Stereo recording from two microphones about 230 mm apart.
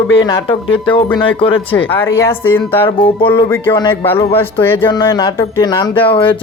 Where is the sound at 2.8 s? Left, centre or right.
Left.